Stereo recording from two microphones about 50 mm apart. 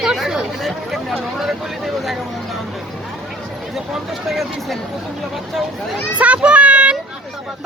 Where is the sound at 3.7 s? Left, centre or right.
Centre.